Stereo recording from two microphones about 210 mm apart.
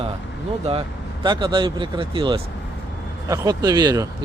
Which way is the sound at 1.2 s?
20° right (ahead or behind).